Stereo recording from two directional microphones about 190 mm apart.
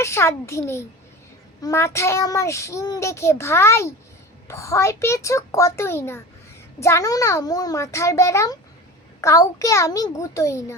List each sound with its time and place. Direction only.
0.0 s a child's voice: 15° left (ahead or behind)